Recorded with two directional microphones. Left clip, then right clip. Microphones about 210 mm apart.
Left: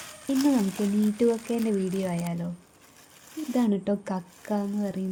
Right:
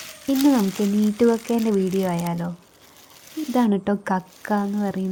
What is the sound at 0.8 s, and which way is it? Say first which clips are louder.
Speech: right 5 dB; 20° right (ahead or behind).